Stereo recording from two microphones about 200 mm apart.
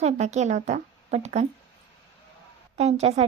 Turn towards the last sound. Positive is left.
turn(degrees=-30)  # may be behind; listen again after turning